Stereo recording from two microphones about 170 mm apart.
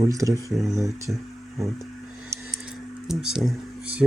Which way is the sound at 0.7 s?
20° right (ahead or behind).